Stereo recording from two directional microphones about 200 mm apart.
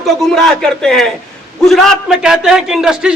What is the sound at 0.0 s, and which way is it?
A man's voice, centre (ahead or behind).